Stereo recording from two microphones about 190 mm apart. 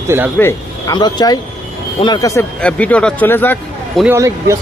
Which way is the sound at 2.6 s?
5° left (ahead or behind).